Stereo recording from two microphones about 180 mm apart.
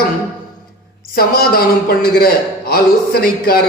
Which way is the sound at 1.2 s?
55° left (ahead or behind).